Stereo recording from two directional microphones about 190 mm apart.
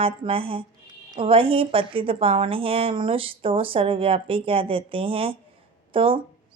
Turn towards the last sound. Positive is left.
turn(degrees=-30)  # may be behind; listen again after turning